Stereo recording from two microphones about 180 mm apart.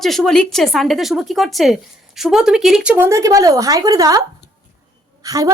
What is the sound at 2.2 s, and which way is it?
A woman's voice, centre (ahead or behind).